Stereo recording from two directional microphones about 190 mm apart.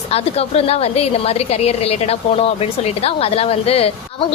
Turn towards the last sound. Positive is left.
turn(degrees=30)  # may be behind; listen again after turning